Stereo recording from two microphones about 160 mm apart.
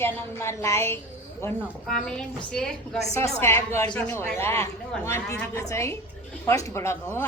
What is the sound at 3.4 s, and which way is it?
A woman's voice, 15° left (ahead or behind).